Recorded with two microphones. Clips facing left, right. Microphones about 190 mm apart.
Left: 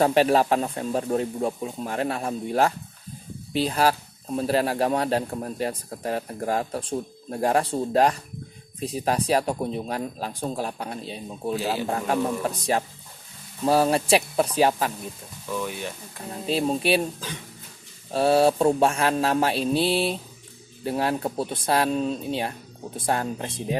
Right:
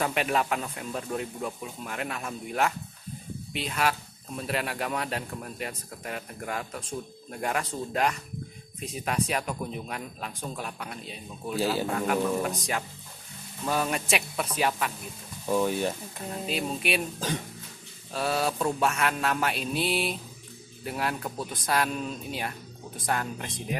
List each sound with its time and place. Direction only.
0.0 s a man's voice: 35° left (ahead or behind)
13.7 s a man's voice: 35° left (ahead or behind)
15.4 s speech: 35° right (ahead or behind)
16.4 s a man's voice: 30° left (ahead or behind)
18.1 s a man's voice: 30° left (ahead or behind)